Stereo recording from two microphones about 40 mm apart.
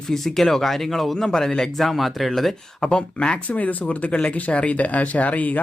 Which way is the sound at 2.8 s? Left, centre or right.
Left.